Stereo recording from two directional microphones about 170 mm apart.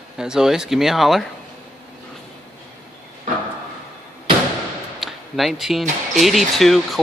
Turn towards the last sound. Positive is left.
turn(degrees=0)  # may be behind; listen again after turning